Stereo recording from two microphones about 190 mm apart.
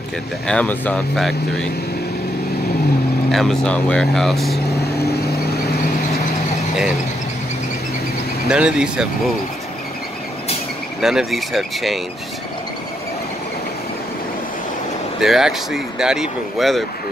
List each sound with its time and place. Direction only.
0.5 s speech: 5° left (ahead or behind)
3.3 s speech: centre (ahead or behind)
5.0 s vehicle: 60° left (ahead or behind)
8.5 s speech: 5° right (ahead or behind)
11.0 s speech: centre (ahead or behind)
15.1 s speech: centre (ahead or behind)